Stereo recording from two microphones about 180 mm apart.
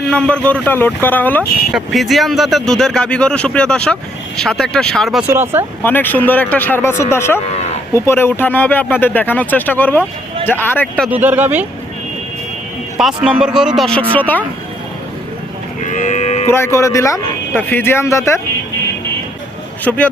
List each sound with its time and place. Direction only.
0.1 s speech: 5° left (ahead or behind)
5.3 s speech: 15° right (ahead or behind)
5.8 s speech: 10° left (ahead or behind)
11.1 s speech: 10° right (ahead or behind)
13.0 s speech: 5° right (ahead or behind)
15.9 s speech: 45° left (ahead or behind)
16.5 s speech: 15° left (ahead or behind)
19.8 s speech: 10° left (ahead or behind)